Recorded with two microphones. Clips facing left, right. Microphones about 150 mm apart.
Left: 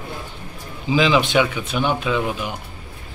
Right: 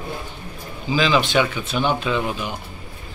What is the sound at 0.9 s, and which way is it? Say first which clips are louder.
A man's voice: left 2 dB; 15° left (ahead or behind).